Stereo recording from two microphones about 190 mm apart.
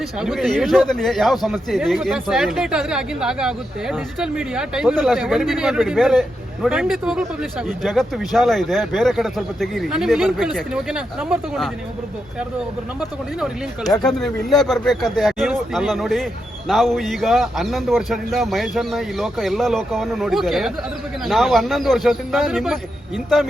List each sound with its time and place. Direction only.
0.2 s speech: centre (ahead or behind)
14.2 s speech: centre (ahead or behind)